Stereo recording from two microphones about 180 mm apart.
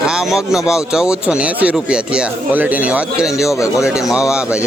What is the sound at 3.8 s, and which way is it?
Speech, 5° right (ahead or behind).